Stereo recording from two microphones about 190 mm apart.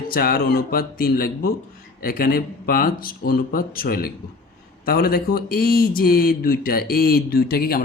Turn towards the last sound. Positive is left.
turn(degrees=50)  # may be behind; listen again after turning